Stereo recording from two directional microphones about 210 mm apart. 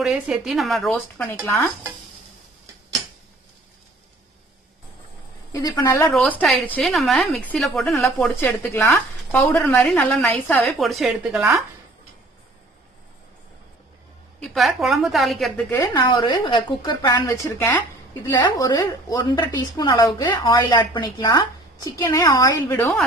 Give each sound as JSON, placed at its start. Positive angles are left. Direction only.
{"t": 0.0, "sound": "speech", "side_deg": -5}
{"t": 5.5, "sound": "speech", "side_deg": 15}
{"t": 7.9, "sound": "speech", "side_deg": 10}
{"t": 14.4, "sound": "a woman's voice", "side_deg": 0}
{"t": 15.8, "sound": "speech", "side_deg": 20}